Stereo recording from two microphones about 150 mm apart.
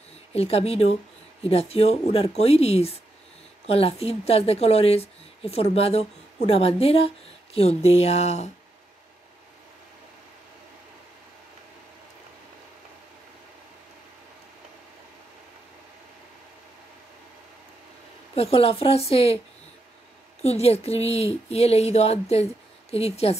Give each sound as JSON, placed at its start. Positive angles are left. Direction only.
{"t": 0.3, "sound": "a woman's voice", "side_deg": 40}
{"t": 18.3, "sound": "a woman's voice", "side_deg": 40}
{"t": 20.4, "sound": "speech", "side_deg": 45}